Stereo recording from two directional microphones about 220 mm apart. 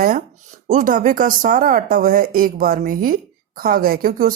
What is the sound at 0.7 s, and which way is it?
Speech, 40° right (ahead or behind).